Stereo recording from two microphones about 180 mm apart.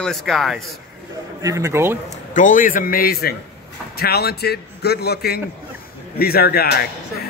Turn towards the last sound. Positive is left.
turn(degrees=60)  # may be behind; listen again after turning